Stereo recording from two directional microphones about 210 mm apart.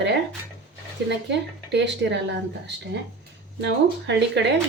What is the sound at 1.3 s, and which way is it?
Speech, 55° right (ahead or behind).